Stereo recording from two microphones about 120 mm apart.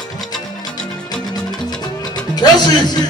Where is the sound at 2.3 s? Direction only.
35° left (ahead or behind).